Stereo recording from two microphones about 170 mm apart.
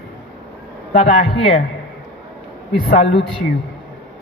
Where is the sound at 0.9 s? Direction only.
40° left (ahead or behind).